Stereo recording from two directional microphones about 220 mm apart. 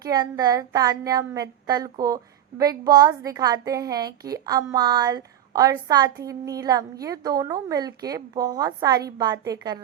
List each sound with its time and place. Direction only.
0.0 s speech: 15° right (ahead or behind)